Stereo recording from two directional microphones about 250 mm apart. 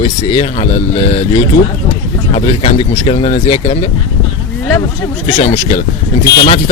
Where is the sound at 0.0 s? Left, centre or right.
Left.